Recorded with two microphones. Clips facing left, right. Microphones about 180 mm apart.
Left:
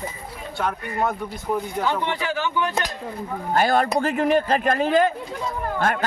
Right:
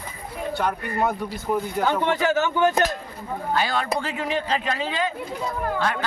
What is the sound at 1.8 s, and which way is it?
Speech, 45° right (ahead or behind).